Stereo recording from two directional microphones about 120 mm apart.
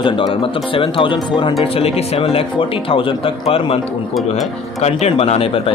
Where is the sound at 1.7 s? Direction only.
55° left (ahead or behind).